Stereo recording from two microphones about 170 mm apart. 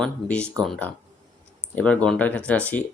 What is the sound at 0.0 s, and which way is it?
Speech, 5° left (ahead or behind).